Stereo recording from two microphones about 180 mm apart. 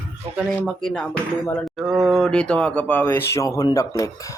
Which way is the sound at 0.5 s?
5° left (ahead or behind).